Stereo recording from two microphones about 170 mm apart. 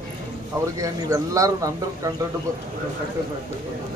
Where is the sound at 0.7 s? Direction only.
20° right (ahead or behind).